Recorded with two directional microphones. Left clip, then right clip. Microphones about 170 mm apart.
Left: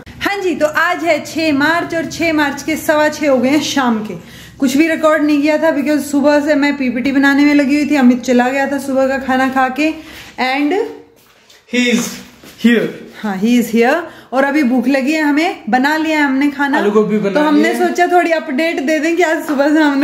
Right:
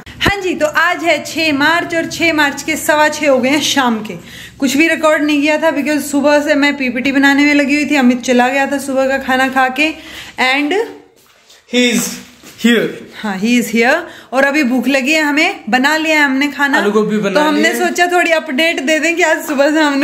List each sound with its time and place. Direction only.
0.2 s a man's voice: 5° left (ahead or behind)
11.7 s speech: 55° right (ahead or behind)
12.6 s speech: 15° right (ahead or behind)
13.2 s speech: 15° left (ahead or behind)
16.8 s speech: 5° right (ahead or behind)
17.5 s speech: 10° left (ahead or behind)